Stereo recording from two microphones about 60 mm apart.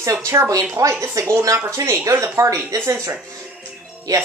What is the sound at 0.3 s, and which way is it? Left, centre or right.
Speech, right.